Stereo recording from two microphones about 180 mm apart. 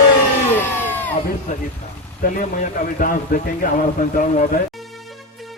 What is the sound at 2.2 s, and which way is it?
A man's voice, 45° left (ahead or behind).